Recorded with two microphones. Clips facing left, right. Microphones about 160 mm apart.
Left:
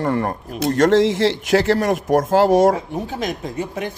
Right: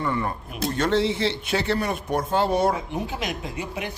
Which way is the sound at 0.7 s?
90° left.